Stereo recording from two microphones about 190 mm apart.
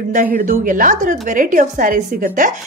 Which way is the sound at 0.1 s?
45° right (ahead or behind).